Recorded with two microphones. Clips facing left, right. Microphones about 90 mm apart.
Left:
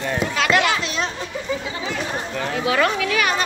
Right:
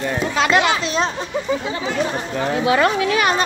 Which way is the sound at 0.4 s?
25° right (ahead or behind).